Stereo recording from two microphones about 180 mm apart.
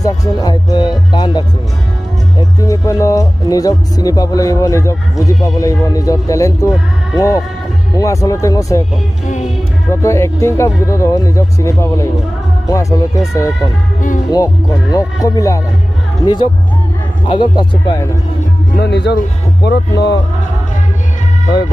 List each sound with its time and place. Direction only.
0.0 s music: 20° left (ahead or behind)
5.2 s speech: 20° left (ahead or behind)
9.8 s speech: 15° left (ahead or behind)
17.3 s speech: 25° left (ahead or behind)
18.8 s speech: 70° left (ahead or behind)